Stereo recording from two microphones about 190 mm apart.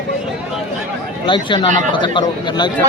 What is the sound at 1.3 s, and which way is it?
A man's voice, 25° left (ahead or behind).